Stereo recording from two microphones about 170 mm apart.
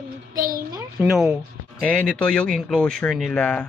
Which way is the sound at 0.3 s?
60° right (ahead or behind).